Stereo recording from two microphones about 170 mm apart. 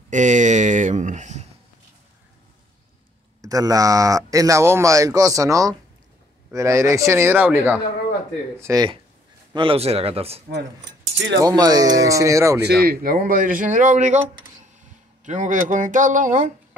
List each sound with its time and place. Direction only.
0.1 s speech: 45° right (ahead or behind)
3.4 s speech: 20° right (ahead or behind)
8.5 s speech: 20° right (ahead or behind)
9.5 s speech: 30° right (ahead or behind)
11.1 s speech: 90° right
11.4 s speech: 20° right (ahead or behind)
12.8 s a man's voice: 60° right (ahead or behind)
15.2 s a man's voice: 45° right (ahead or behind)